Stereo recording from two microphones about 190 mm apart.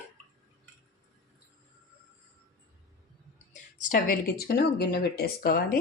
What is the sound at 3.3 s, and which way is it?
A woman's voice, 40° left (ahead or behind).